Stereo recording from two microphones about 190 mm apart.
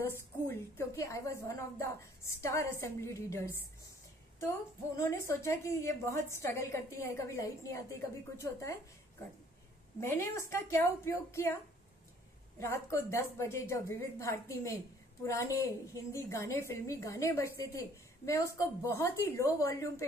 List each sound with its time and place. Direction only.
0.0 s a woman's voice: 10° left (ahead or behind)
9.9 s a woman's voice: 15° left (ahead or behind)
12.5 s a woman's voice: 15° left (ahead or behind)